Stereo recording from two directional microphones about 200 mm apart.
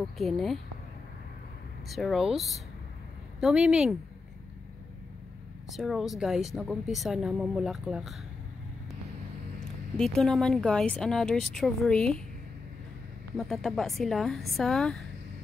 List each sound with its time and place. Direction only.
0.0 s speech: centre (ahead or behind)
1.9 s speech: centre (ahead or behind)
5.7 s speech: centre (ahead or behind)
9.7 s speech: 5° left (ahead or behind)
13.4 s speech: centre (ahead or behind)